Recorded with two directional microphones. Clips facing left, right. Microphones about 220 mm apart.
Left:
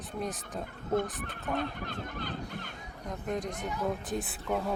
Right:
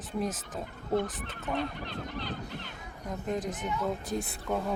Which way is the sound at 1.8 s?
50° left (ahead or behind).